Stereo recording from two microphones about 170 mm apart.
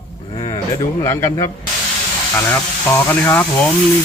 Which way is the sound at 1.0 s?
15° left (ahead or behind).